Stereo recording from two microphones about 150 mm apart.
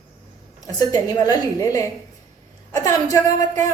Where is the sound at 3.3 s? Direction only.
55° right (ahead or behind).